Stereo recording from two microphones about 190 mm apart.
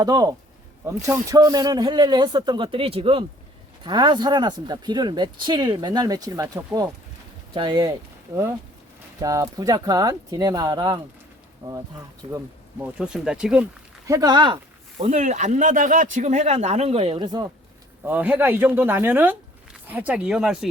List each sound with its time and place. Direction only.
0.0 s speech: 20° right (ahead or behind)
9.2 s speech: 20° right (ahead or behind)
12.8 s speech: 5° right (ahead or behind)
14.1 s speech: 20° right (ahead or behind)
14.9 s speech: 40° right (ahead or behind); by 17.5 s 20° right (ahead or behind)
18.0 s speech: 10° right (ahead or behind)